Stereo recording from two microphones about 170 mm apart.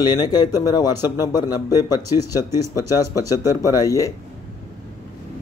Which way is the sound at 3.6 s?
20° left (ahead or behind).